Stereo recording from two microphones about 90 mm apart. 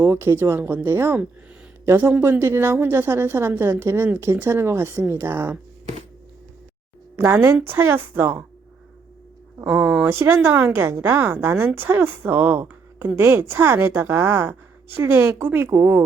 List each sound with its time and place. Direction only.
0.0 s a woman's voice: 30° right (ahead or behind)
7.2 s a woman's voice: 25° right (ahead or behind)
9.6 s speech: 10° right (ahead or behind)
10.1 s a woman's voice: 25° right (ahead or behind)